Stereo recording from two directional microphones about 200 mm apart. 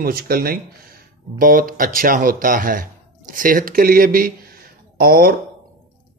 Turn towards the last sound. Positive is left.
turn(degrees=-50)  # may be behind; listen again after turning